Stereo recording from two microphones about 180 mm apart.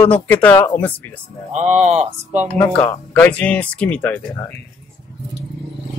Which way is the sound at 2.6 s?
10° left (ahead or behind).